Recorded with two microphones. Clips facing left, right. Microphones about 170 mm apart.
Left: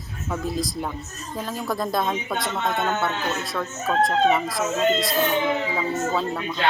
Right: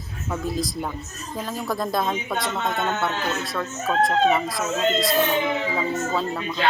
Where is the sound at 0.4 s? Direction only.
Centre (ahead or behind).